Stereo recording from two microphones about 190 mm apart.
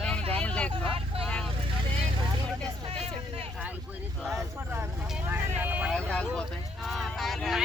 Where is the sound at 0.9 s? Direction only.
30° right (ahead or behind).